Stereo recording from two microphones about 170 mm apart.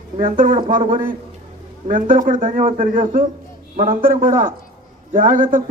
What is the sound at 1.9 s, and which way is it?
A man's voice, 55° right (ahead or behind).